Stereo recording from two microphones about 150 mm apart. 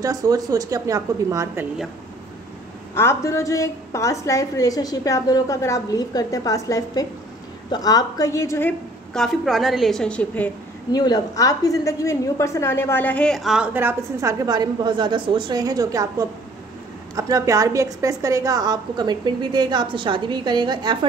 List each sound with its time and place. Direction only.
0.0 s a woman's voice: 25° right (ahead or behind)
2.9 s a woman's voice: 15° left (ahead or behind)
9.1 s a woman's voice: centre (ahead or behind)
10.9 s a woman's voice: 25° left (ahead or behind); by 13.7 s centre (ahead or behind)
13.7 s a woman's voice: 15° right (ahead or behind)